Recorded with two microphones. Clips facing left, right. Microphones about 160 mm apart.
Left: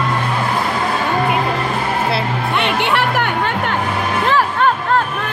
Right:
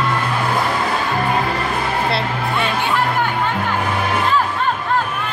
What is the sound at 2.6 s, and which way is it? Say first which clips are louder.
Music: left 2 dB; 70° left (ahead or behind).